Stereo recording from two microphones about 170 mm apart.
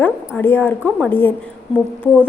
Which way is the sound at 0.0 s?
10° left (ahead or behind).